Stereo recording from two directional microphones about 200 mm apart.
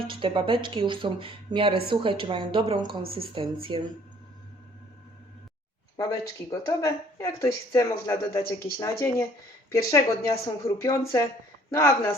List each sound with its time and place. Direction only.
0.1 s speech: 25° right (ahead or behind)
6.0 s speech: 20° left (ahead or behind)